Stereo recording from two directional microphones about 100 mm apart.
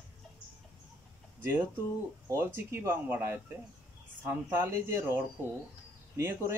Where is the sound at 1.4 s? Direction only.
20° right (ahead or behind).